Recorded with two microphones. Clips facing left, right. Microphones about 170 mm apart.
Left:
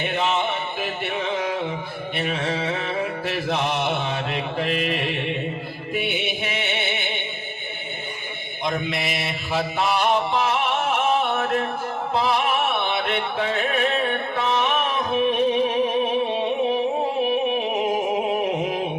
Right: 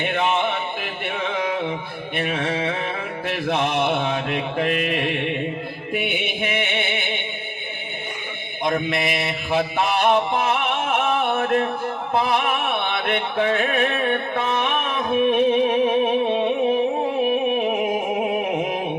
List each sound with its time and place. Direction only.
0.0 s music: 55° right (ahead or behind)
3.2 s mantra: 55° right (ahead or behind)
5.9 s music: 55° right (ahead or behind)
8.6 s mantra: 55° right (ahead or behind)
12.1 s music: 55° right (ahead or behind)
18.4 s a sound: 55° right (ahead or behind)